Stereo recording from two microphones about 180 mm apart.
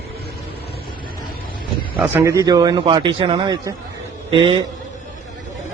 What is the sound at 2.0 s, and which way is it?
Speech, 15° right (ahead or behind).